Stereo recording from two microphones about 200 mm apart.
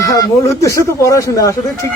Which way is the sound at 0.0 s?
15° left (ahead or behind).